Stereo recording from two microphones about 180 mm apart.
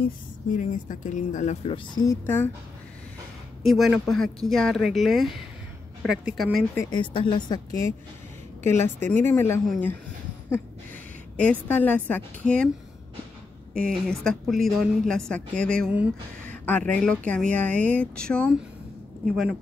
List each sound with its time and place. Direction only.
0.6 s speech: 45° left (ahead or behind)
2.0 s speech: 15° left (ahead or behind)
3.6 s a woman's voice: centre (ahead or behind)
6.7 s speech: 15° left (ahead or behind)
7.0 s a woman's voice: 25° left (ahead or behind); by 9.9 s 10° left (ahead or behind)
11.6 s speech: 10° left (ahead or behind)
13.7 s a woman's voice: 5° left (ahead or behind)